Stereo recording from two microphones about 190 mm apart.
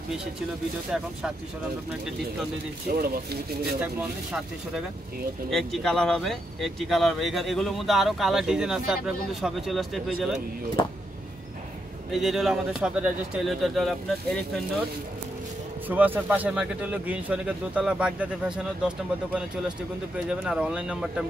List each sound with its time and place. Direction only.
2.9 s speech: 50° right (ahead or behind)
3.8 s speech: 5° right (ahead or behind)
12.1 s speech: centre (ahead or behind)
15.9 s speech: 10° right (ahead or behind)